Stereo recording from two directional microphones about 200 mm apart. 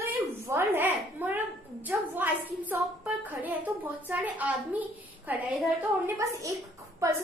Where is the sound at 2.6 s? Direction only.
10° right (ahead or behind).